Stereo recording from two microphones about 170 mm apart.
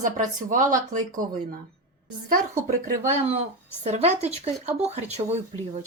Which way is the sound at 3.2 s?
35° right (ahead or behind).